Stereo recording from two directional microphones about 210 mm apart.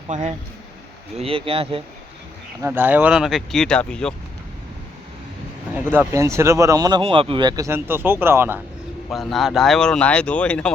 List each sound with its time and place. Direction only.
0.1 s speech: 35° right (ahead or behind)
2.6 s speech: 10° right (ahead or behind)
5.9 s speech: 10° right (ahead or behind)
9.0 s speech: centre (ahead or behind)